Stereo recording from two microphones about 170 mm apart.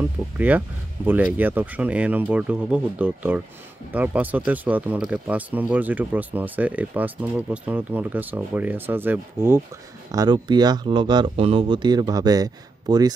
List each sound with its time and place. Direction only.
0.4 s speech: 10° right (ahead or behind)
10.1 s speech: 25° right (ahead or behind)